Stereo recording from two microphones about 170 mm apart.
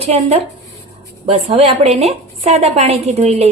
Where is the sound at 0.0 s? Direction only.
35° right (ahead or behind).